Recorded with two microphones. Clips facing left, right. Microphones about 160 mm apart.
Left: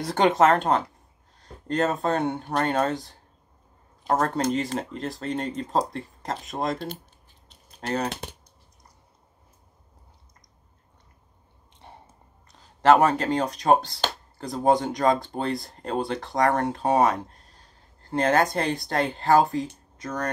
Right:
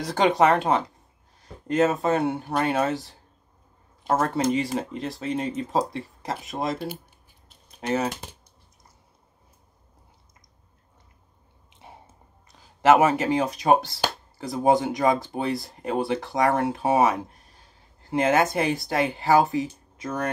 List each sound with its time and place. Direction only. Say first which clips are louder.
0.0 s speech: even; centre (ahead or behind)
4.1 s speech: right 1 dB; 5° right (ahead or behind)
7.4 s keys jangling: right 3 dB; 10° right (ahead or behind)
12.4 s speech: even; 5° right (ahead or behind)